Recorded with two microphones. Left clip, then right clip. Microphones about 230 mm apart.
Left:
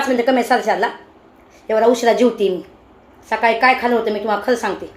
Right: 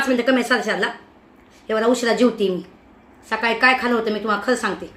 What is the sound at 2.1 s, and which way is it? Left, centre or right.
Speech, right.